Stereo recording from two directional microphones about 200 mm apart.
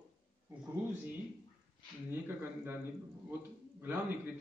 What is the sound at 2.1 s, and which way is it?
Speech, 10° right (ahead or behind).